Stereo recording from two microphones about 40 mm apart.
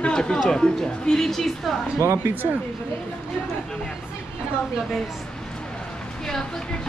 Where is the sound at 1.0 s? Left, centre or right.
Centre.